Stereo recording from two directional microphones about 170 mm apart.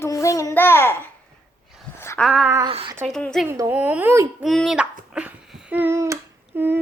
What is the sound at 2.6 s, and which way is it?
Speech, 30° right (ahead or behind).